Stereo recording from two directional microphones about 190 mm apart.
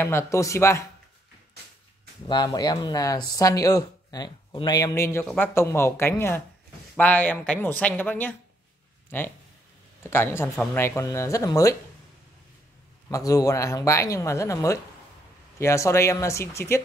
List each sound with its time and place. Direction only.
0.0 s speech: 15° left (ahead or behind)
2.2 s speech: 20° left (ahead or behind)
13.1 s speech: 20° left (ahead or behind)